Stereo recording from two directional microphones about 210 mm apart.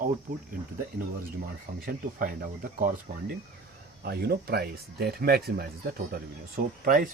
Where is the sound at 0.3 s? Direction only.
45° right (ahead or behind).